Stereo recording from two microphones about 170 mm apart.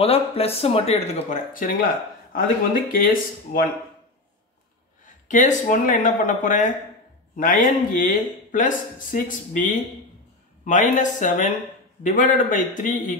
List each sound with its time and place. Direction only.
0.0 s speech: 35° left (ahead or behind); by 3.6 s 55° left (ahead or behind)
5.0 s speech: 45° left (ahead or behind)